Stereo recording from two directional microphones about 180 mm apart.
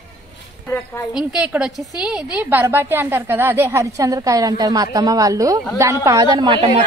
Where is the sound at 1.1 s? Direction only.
5° right (ahead or behind); by 6.7 s 25° right (ahead or behind).